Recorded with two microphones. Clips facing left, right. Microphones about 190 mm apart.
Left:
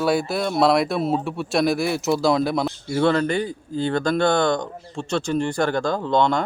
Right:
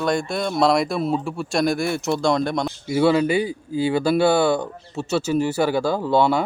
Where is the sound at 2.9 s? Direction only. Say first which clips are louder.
Right 3 dB; 10° right (ahead or behind).